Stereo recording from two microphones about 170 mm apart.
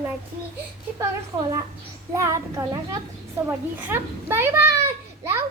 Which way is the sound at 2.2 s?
20° right (ahead or behind).